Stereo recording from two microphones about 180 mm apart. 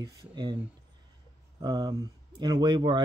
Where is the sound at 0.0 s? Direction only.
25° right (ahead or behind).